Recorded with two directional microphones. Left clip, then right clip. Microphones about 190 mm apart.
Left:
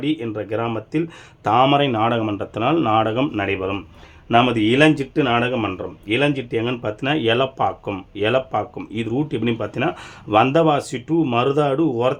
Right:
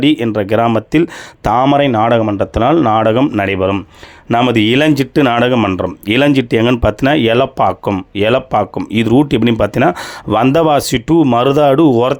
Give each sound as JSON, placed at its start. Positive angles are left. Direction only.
{"t": 0.0, "sound": "speech", "side_deg": -45}
{"t": 1.7, "sound": "speech", "side_deg": -35}